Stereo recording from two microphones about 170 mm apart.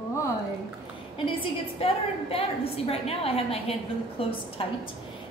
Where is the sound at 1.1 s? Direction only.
35° left (ahead or behind).